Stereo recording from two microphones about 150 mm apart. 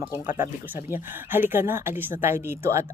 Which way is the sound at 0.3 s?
15° right (ahead or behind).